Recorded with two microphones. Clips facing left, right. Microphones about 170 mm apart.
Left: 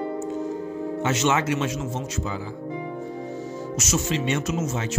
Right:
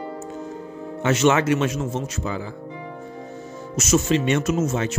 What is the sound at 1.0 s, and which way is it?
Speech, 60° right (ahead or behind).